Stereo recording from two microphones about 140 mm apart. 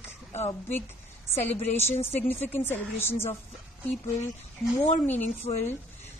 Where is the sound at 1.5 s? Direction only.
50° left (ahead or behind).